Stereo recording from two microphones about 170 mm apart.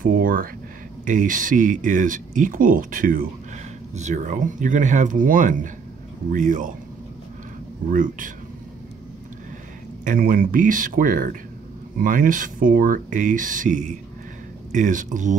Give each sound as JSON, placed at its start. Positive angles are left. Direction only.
{"t": 0.0, "sound": "speech", "side_deg": -55}
{"t": 3.9, "sound": "speech", "side_deg": -45}
{"t": 7.9, "sound": "speech", "side_deg": -50}
{"t": 10.0, "sound": "speech", "side_deg": -55}